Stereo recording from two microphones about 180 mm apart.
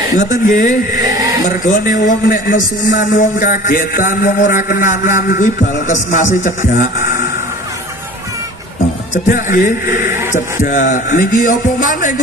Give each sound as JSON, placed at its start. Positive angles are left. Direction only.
{"t": 0.1, "sound": "a man's voice", "side_deg": 45}
{"t": 9.1, "sound": "a man's voice", "side_deg": 50}